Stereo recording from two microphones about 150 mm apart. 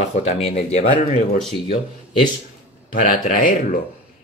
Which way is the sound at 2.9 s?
65° left (ahead or behind).